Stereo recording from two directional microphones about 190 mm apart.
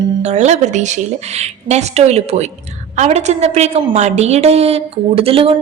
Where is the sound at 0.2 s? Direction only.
35° right (ahead or behind).